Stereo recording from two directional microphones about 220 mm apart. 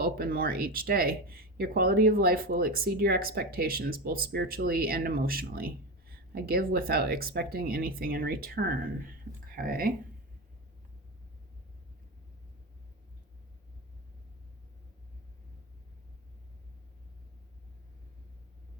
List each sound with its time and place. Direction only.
0.0 s speech: 45° right (ahead or behind)